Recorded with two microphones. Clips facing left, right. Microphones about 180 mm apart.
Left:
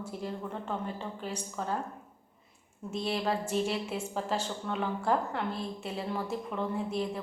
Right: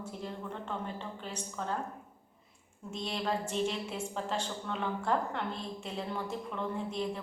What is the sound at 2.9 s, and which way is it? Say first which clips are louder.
A woman's voice: left 3 dB; 5° left (ahead or behind).